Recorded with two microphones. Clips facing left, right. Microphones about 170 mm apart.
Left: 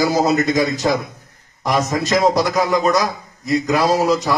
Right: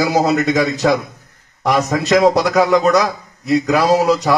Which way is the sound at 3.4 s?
65° right (ahead or behind).